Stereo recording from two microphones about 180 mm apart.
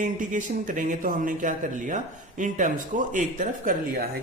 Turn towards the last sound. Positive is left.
turn(degrees=-55)  # may be behind; listen again after turning